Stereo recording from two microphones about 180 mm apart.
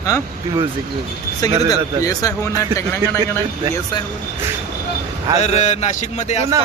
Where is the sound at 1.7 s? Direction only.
20° left (ahead or behind).